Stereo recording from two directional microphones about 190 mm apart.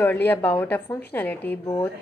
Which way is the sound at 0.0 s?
10° left (ahead or behind).